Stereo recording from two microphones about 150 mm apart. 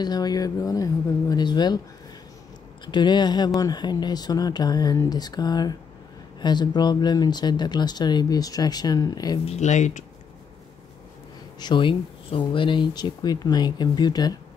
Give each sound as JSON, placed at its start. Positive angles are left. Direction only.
{"t": 0.0, "sound": "speech", "side_deg": 25}
{"t": 2.9, "sound": "speech", "side_deg": 30}
{"t": 9.4, "sound": "speech", "side_deg": 45}
{"t": 11.6, "sound": "speech", "side_deg": 35}